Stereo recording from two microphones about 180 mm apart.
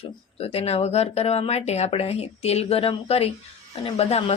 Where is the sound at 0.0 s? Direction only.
35° left (ahead or behind).